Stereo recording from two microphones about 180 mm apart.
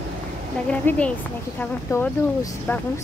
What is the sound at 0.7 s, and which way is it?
A woman's voice, 5° left (ahead or behind).